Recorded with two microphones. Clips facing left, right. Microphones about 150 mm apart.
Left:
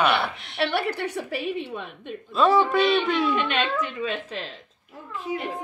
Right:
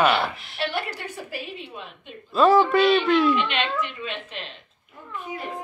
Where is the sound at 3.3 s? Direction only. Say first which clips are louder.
Even; 45° left (ahead or behind).